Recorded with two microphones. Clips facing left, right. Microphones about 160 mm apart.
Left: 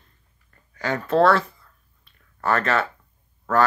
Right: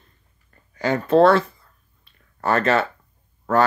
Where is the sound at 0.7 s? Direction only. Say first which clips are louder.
Right 4 dB; 25° right (ahead or behind).